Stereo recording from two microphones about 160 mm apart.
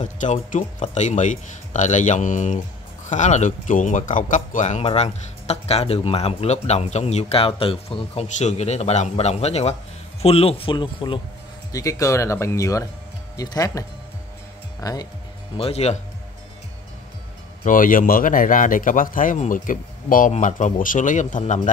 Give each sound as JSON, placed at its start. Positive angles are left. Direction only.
{"t": 0.0, "sound": "a man's voice", "side_deg": 50}
{"t": 11.7, "sound": "speech", "side_deg": 20}
{"t": 15.5, "sound": "speech", "side_deg": 40}
{"t": 17.6, "sound": "speech", "side_deg": 60}